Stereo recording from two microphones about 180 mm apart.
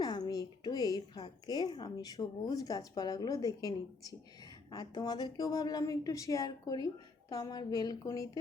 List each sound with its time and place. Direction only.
0.0 s a woman's voice: 20° left (ahead or behind)